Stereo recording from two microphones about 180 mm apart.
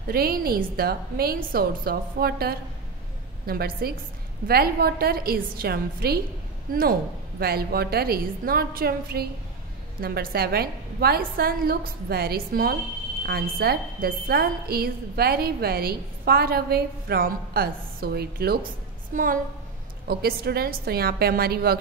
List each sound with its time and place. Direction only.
0.1 s a woman's voice: 55° right (ahead or behind)
19.1 s a woman's voice: 45° right (ahead or behind)
20.1 s a woman's voice: 60° right (ahead or behind)